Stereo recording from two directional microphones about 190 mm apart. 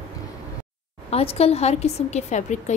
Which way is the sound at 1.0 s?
30° left (ahead or behind).